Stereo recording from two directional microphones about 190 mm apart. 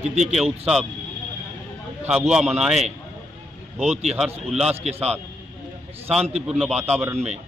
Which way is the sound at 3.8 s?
35° right (ahead or behind).